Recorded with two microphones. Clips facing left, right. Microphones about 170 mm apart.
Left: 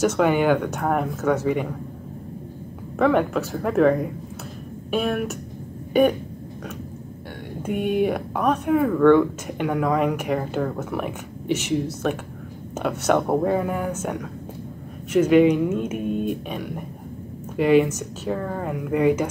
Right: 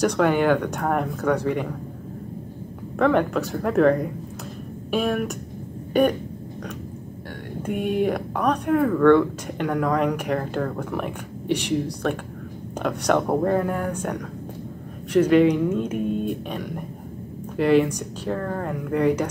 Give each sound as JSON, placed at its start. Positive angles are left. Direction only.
{"t": 0.0, "sound": "speech", "side_deg": 5}
{"t": 3.0, "sound": "speech", "side_deg": 5}
{"t": 7.6, "sound": "speech", "side_deg": 5}
{"t": 15.1, "sound": "speech", "side_deg": 5}